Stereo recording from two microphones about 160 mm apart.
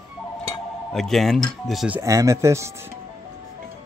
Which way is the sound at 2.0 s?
20° right (ahead or behind).